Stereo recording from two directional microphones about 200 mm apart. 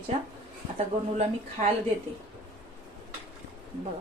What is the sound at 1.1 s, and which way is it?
Speech, 35° right (ahead or behind).